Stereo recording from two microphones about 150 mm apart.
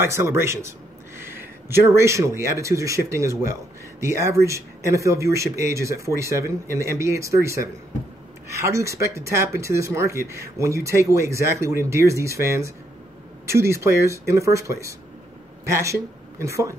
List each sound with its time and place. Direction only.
0.0 s speech: 15° right (ahead or behind)